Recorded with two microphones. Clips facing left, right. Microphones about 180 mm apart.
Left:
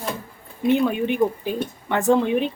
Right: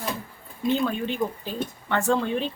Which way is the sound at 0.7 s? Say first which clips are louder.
Left 5 dB; 15° left (ahead or behind).